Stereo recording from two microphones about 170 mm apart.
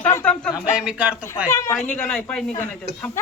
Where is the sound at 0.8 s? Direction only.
5° right (ahead or behind).